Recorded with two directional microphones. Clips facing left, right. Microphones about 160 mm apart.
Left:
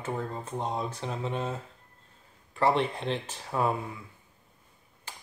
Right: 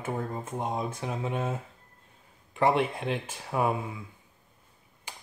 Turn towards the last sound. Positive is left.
turn(degrees=-15)  # may be behind; listen again after turning